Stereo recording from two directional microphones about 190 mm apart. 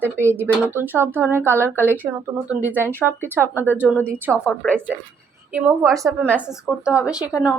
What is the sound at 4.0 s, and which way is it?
Speech, 10° right (ahead or behind).